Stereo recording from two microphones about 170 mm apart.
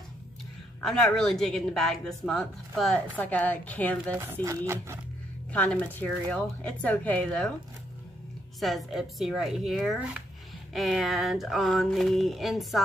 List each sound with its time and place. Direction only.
0.8 s speech: centre (ahead or behind)
4.1 s speech: 15° right (ahead or behind)
5.5 s speech: 10° left (ahead or behind)
8.5 s speech: centre (ahead or behind)